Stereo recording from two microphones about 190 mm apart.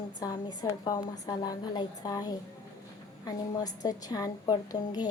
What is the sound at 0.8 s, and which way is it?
Speech, 20° left (ahead or behind).